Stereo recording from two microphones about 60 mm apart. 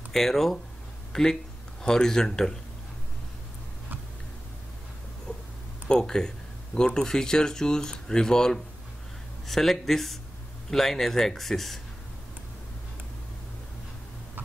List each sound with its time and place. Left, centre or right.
0.1 s speech: centre
5.9 s speech: centre